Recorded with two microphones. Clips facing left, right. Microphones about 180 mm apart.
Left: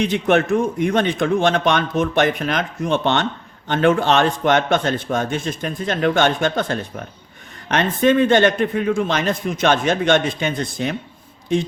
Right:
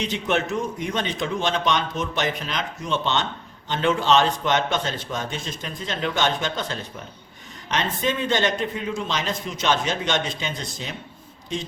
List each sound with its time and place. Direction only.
0.0 s a man's voice: 55° left (ahead or behind)